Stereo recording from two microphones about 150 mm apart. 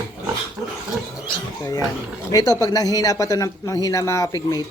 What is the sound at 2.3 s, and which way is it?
Speech, 25° left (ahead or behind).